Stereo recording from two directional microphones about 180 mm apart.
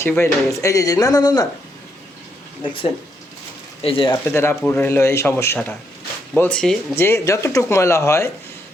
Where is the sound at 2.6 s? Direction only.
30° left (ahead or behind).